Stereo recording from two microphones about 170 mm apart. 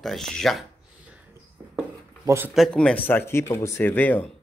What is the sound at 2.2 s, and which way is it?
Speech, 15° right (ahead or behind).